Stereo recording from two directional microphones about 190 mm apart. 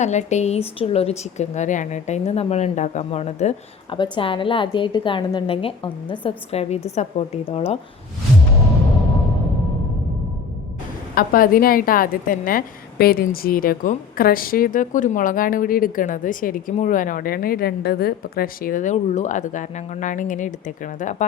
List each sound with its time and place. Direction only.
0.0 s speech: 40° left (ahead or behind)
11.1 s a woman's voice: 50° left (ahead or behind)